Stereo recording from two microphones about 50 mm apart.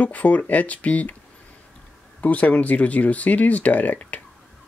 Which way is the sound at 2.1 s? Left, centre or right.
Left.